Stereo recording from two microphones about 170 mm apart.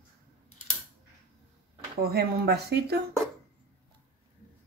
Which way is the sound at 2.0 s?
65° right (ahead or behind).